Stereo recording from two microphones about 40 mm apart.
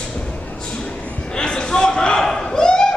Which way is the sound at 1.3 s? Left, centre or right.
Left.